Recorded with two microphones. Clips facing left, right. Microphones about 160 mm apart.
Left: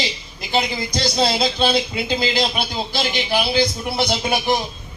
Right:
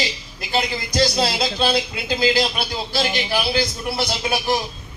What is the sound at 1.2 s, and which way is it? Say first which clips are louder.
A man's voice: left 2 dB; 20° left (ahead or behind).